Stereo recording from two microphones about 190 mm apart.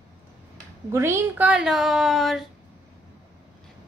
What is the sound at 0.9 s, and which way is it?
Speech, 15° right (ahead or behind).